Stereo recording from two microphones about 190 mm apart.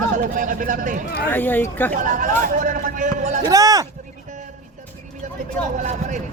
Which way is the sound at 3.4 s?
20° right (ahead or behind).